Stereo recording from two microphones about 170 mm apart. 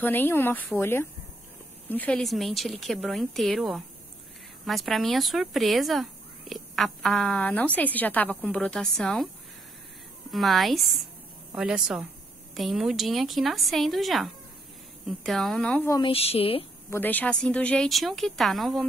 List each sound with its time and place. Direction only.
0.0 s a woman's voice: 10° left (ahead or behind)
10.3 s speech: centre (ahead or behind)
15.9 s speech: 30° left (ahead or behind)
16.9 s speech: 10° left (ahead or behind)